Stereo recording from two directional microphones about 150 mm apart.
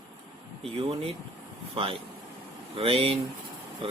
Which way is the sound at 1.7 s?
40° right (ahead or behind).